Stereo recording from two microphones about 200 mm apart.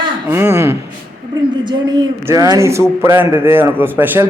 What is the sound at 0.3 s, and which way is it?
A man's voice, 10° right (ahead or behind).